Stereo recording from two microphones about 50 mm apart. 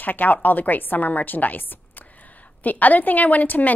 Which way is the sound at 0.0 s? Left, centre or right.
Left.